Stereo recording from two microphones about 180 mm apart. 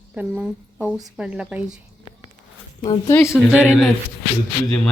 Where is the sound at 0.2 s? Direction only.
5° right (ahead or behind).